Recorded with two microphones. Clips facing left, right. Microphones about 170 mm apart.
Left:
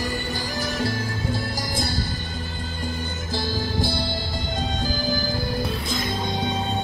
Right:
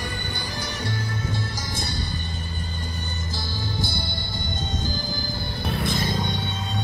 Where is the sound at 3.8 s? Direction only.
90° left.